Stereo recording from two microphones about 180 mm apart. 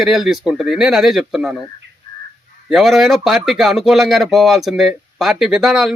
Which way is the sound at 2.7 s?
Centre (ahead or behind).